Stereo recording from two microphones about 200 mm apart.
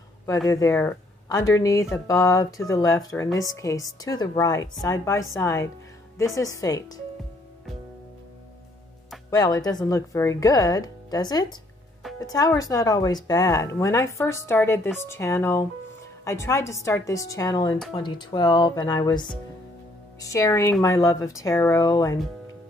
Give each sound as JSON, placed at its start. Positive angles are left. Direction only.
{"t": 0.5, "sound": "speech", "side_deg": 15}
{"t": 9.3, "sound": "speech", "side_deg": 20}